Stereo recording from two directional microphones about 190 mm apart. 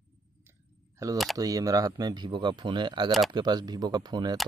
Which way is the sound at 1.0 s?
15° right (ahead or behind).